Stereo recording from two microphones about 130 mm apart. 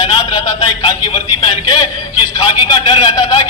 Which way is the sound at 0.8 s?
40° left (ahead or behind).